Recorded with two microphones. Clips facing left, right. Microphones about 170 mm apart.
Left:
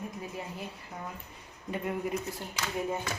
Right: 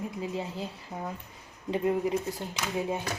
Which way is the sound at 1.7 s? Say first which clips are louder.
Right 6 dB; 25° right (ahead or behind).